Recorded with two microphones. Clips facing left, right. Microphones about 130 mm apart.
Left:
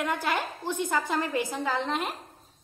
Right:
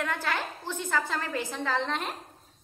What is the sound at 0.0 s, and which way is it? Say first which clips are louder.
A woman's voice: left 2 dB; 15° left (ahead or behind).